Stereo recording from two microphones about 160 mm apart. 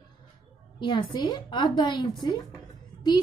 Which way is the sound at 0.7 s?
30° left (ahead or behind).